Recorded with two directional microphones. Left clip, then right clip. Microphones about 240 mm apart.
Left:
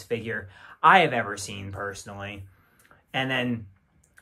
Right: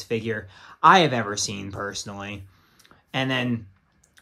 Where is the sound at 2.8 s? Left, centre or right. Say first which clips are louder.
Right 1 dB; centre.